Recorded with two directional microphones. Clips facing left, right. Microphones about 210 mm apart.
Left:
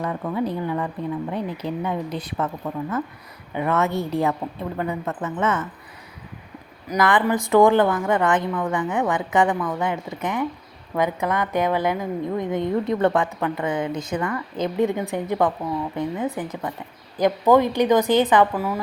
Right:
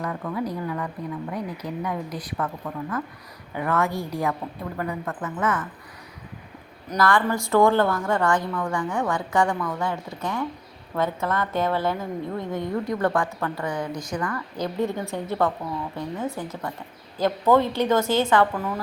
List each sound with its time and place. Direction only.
0.0 s a woman's voice: 25° left (ahead or behind)
3.5 s a woman's voice: 20° left (ahead or behind)
6.8 s a woman's voice: 15° left (ahead or behind)